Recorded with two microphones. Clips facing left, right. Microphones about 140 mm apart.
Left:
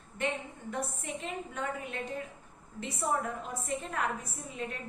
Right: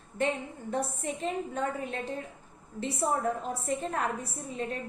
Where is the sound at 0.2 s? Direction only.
35° right (ahead or behind).